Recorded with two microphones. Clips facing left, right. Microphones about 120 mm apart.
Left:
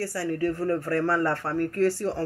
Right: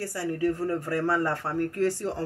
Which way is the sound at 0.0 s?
20° right (ahead or behind).